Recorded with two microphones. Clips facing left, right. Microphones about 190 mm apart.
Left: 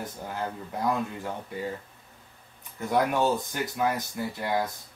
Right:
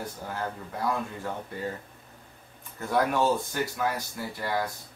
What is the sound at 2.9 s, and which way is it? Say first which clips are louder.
Speech: even; 15° left (ahead or behind).